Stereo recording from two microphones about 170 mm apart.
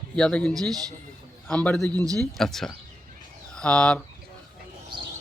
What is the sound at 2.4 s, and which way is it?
A man's voice, centre (ahead or behind).